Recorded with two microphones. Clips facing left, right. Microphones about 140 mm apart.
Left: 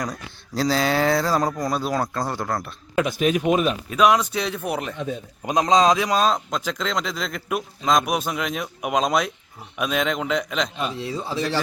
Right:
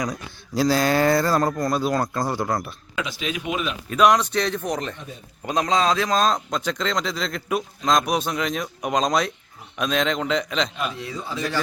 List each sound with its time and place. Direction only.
0.1 s speech: 5° right (ahead or behind)
2.9 s speech: 50° left (ahead or behind)
3.8 s speech: 5° left (ahead or behind)
5.5 s speech: 20° left (ahead or behind); by 10.7 s 5° left (ahead or behind)
10.8 s a man's voice: 30° left (ahead or behind)